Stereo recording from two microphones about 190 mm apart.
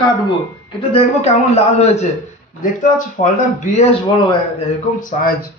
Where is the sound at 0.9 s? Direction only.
35° left (ahead or behind).